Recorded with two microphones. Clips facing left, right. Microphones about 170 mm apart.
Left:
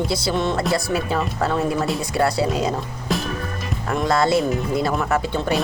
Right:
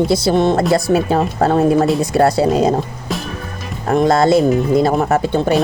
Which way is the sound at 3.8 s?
40° right (ahead or behind).